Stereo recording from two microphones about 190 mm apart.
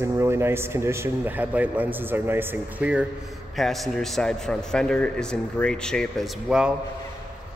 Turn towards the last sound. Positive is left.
turn(degrees=0)  # may be behind; listen again after turning